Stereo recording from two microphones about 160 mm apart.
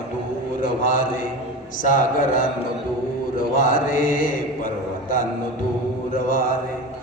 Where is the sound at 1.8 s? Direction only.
55° left (ahead or behind).